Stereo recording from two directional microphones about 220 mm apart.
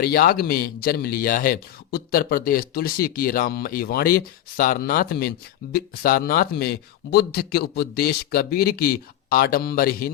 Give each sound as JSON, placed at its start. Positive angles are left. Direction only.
{"t": 0.0, "sound": "speech", "side_deg": 45}